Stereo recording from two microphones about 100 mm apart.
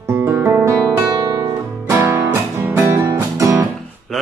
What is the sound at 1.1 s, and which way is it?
Music, 35° right (ahead or behind).